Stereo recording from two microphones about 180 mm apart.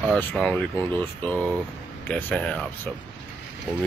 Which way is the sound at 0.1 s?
5° left (ahead or behind).